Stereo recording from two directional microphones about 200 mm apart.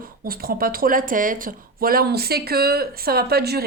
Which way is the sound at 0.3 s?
50° right (ahead or behind).